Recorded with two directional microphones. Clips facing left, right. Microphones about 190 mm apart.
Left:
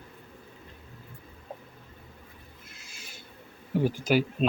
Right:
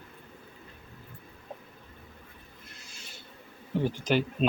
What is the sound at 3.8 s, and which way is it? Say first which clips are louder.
Speech: left 2 dB; 10° left (ahead or behind).